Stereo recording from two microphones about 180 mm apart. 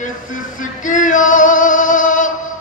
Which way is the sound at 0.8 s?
45° left (ahead or behind).